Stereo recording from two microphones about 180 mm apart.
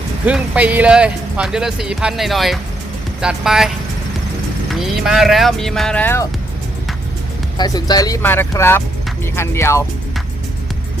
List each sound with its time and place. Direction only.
0.3 s speech: 10° right (ahead or behind)
4.7 s speech: centre (ahead or behind)
7.6 s speech: 20° left (ahead or behind)